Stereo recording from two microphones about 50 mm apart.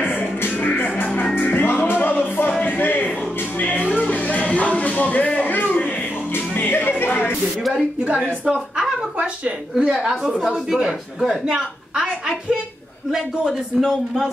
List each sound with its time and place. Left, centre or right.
0.0 s music: left
2.6 s a sound: left
3.5 s music: left
7.7 s a woman's voice: right
8.7 s a sound: centre
9.9 s a woman's voice: centre
13.7 s a man's voice: centre